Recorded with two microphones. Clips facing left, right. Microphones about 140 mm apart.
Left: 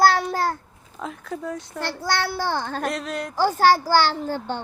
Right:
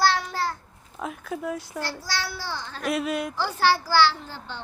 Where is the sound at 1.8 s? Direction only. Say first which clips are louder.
Left 10 dB; 60° left (ahead or behind).